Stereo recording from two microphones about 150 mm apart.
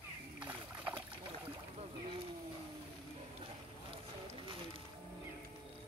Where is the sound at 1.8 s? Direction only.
35° right (ahead or behind).